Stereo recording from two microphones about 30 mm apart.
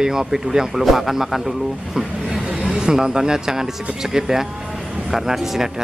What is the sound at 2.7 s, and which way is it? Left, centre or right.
Speech, right.